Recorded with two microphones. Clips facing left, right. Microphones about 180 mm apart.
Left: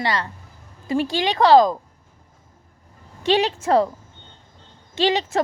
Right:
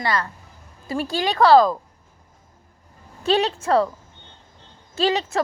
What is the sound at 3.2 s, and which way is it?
Speech, 35° right (ahead or behind).